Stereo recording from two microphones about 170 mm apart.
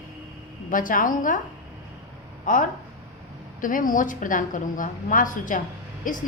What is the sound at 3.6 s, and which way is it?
A woman's voice, 55° left (ahead or behind).